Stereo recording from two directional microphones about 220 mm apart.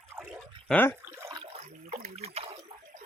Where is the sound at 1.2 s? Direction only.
15° right (ahead or behind).